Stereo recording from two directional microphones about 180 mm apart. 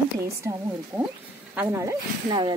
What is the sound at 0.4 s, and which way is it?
Speech, 15° right (ahead or behind).